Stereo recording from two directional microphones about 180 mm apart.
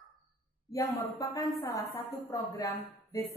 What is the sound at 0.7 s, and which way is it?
A woman's voice, 20° left (ahead or behind).